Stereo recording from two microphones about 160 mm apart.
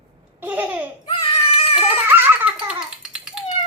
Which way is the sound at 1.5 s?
35° left (ahead or behind).